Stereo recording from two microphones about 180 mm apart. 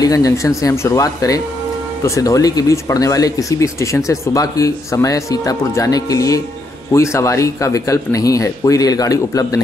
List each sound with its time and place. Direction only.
0.0 s speech: 20° left (ahead or behind)